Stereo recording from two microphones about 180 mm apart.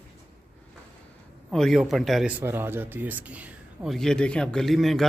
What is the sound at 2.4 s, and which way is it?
Speech, 10° right (ahead or behind).